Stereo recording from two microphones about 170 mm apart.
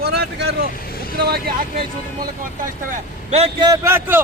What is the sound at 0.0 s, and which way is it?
Vehicle, 70° right (ahead or behind).